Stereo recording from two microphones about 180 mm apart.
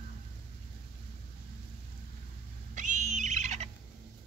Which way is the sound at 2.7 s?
45° right (ahead or behind).